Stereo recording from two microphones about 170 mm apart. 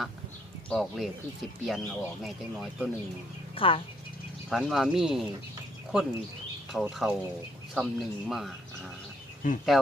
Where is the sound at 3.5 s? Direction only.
30° left (ahead or behind).